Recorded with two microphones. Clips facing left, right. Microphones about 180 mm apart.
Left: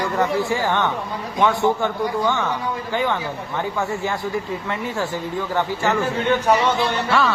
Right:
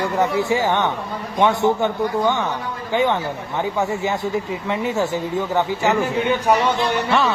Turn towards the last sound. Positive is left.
turn(degrees=-20)  # may be behind; listen again after turning